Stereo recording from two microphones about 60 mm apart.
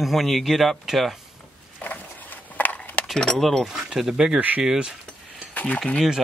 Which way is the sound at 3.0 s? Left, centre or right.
Centre.